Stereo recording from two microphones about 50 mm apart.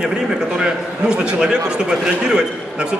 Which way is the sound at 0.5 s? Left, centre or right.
Centre.